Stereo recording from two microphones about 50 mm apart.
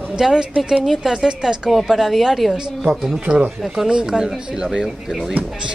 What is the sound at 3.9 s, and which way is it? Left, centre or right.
A woman's voice, centre.